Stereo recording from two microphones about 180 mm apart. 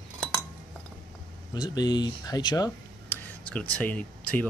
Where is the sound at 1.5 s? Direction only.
20° left (ahead or behind).